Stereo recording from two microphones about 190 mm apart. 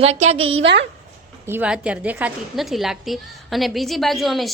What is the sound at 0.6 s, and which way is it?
Speech, 70° right (ahead or behind).